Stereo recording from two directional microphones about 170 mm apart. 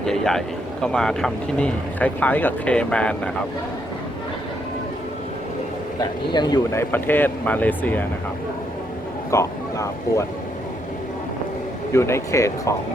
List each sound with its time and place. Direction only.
0.0 s speech: 5° left (ahead or behind)
6.0 s speech: 25° left (ahead or behind)
9.3 s speech: 15° left (ahead or behind)
11.9 s speech: 15° left (ahead or behind)